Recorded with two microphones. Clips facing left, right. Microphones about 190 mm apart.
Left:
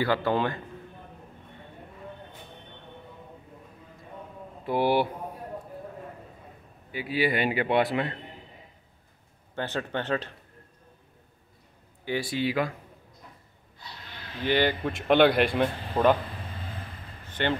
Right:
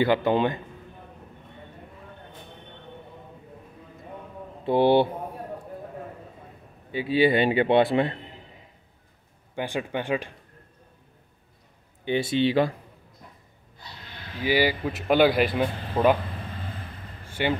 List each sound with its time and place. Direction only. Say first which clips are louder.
0.0 s a man's voice: right 4 dB; 20° right (ahead or behind)
4.6 s a man's voice: right 5 dB; 25° right (ahead or behind)
6.9 s a man's voice: right 6 dB; 25° right (ahead or behind)
9.6 s speech: right 2 dB; 15° right (ahead or behind)
12.0 s a man's voice: right 5 dB; 25° right (ahead or behind)
14.4 s speech: right 2 dB; 5° right (ahead or behind)
17.3 s a sound: right 2 dB; 10° right (ahead or behind)